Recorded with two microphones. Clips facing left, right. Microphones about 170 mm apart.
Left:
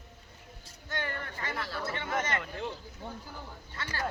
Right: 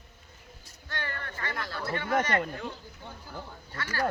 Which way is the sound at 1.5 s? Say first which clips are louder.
Left 2 dB; 5° left (ahead or behind).